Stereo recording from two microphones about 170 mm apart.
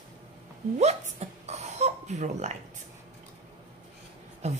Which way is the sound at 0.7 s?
40° right (ahead or behind).